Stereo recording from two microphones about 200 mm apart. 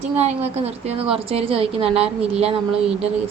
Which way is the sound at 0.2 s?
35° right (ahead or behind).